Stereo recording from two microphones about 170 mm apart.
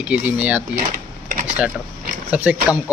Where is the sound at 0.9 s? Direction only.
55° right (ahead or behind).